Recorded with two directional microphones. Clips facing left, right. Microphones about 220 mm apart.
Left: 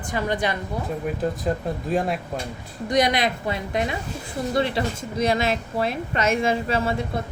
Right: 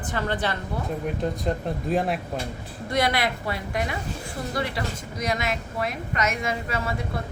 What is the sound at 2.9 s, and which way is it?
A woman's voice, 20° left (ahead or behind).